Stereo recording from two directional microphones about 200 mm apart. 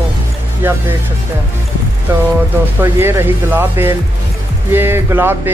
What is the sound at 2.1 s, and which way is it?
Speech, 10° right (ahead or behind).